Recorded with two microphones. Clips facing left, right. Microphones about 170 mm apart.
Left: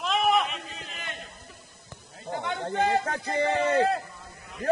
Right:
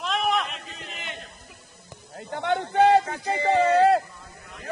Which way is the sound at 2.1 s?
60° right (ahead or behind).